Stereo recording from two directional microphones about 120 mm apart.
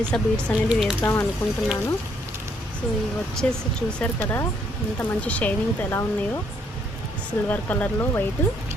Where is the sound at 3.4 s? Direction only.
10° left (ahead or behind).